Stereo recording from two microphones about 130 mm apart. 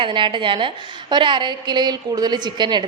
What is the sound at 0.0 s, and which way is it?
A woman's voice, 40° right (ahead or behind).